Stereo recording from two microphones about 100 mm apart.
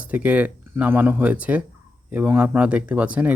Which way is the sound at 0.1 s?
15° right (ahead or behind).